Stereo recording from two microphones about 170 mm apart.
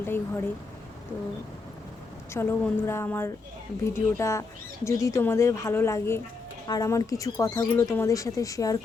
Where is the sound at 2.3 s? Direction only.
15° left (ahead or behind).